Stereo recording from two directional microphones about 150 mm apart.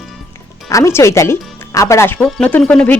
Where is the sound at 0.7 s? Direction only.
20° left (ahead or behind).